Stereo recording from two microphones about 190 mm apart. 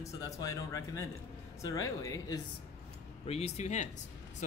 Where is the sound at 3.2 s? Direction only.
35° left (ahead or behind).